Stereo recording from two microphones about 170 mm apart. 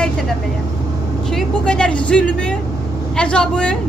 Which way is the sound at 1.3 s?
5° left (ahead or behind).